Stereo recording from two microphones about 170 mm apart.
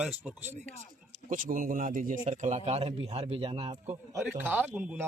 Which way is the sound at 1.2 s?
50° right (ahead or behind).